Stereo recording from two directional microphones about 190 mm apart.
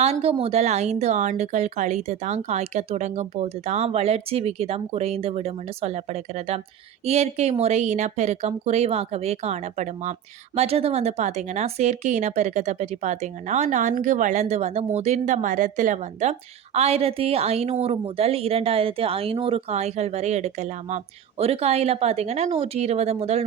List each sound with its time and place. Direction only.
0.0 s speech: 30° right (ahead or behind)